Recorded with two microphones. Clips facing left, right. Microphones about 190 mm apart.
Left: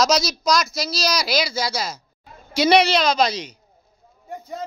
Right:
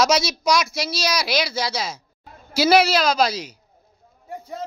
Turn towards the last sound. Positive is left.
turn(degrees=-5)  # may be behind; listen again after turning